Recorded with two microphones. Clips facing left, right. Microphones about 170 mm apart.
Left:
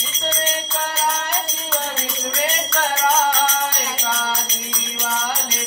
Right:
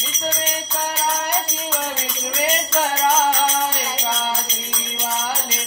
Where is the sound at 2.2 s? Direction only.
20° right (ahead or behind).